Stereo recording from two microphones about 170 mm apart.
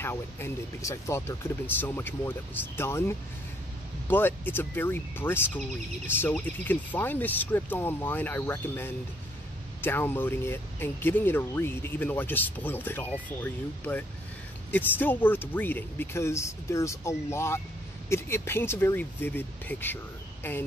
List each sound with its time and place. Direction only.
0.0 s speech: 15° left (ahead or behind)